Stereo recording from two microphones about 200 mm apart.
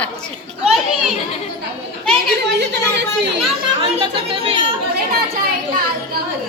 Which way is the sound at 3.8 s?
25° right (ahead or behind).